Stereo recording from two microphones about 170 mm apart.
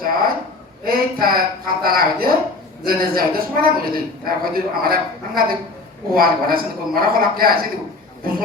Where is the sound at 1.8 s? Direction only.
60° right (ahead or behind).